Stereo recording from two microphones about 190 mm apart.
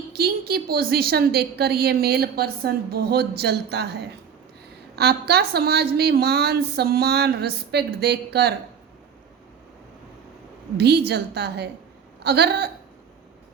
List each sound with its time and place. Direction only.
0.1 s a woman's voice: 55° right (ahead or behind)
4.9 s a woman's voice: 60° right (ahead or behind)
10.8 s a woman's voice: 60° right (ahead or behind)